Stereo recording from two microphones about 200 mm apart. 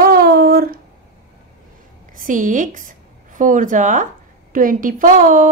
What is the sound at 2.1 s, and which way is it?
A woman's voice, 40° right (ahead or behind).